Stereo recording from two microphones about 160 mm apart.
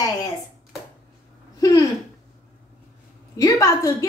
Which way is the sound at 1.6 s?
20° left (ahead or behind).